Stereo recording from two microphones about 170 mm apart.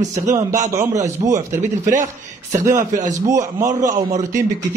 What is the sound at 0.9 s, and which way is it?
Speech, 40° right (ahead or behind).